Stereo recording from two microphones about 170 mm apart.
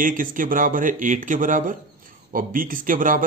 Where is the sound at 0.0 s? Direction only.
55° right (ahead or behind).